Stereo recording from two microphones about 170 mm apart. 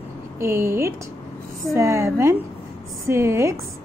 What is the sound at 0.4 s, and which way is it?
A woman's voice, 15° right (ahead or behind).